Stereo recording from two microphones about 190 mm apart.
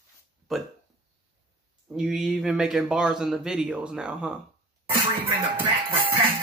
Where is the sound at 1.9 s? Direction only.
Centre (ahead or behind).